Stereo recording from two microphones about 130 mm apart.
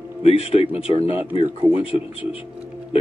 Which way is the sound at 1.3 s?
45° right (ahead or behind).